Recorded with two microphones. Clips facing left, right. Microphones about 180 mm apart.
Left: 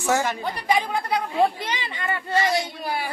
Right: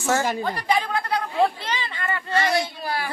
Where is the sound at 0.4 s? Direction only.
10° left (ahead or behind).